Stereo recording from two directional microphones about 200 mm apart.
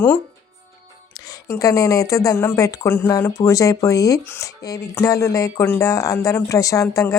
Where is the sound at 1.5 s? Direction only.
15° left (ahead or behind).